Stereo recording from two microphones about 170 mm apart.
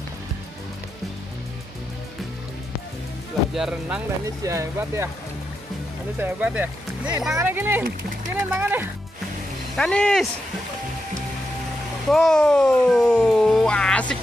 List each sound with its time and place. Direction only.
3.5 s speech: 5° right (ahead or behind)
4.4 s speech: 15° right (ahead or behind)
6.1 s speech: 10° right (ahead or behind)
9.8 s speech: 5° left (ahead or behind)
12.1 s speech: centre (ahead or behind)